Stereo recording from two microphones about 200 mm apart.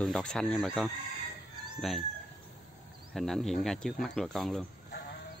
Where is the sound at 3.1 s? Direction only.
Centre (ahead or behind).